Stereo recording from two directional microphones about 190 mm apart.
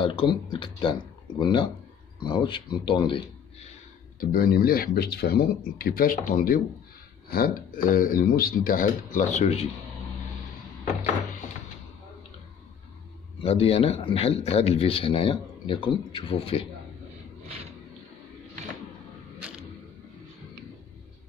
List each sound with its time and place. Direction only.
0.0 s a man's voice: 25° left (ahead or behind)
4.2 s speech: 50° left (ahead or behind); by 9.7 s 35° left (ahead or behind)
13.4 s a man's voice: 30° left (ahead or behind)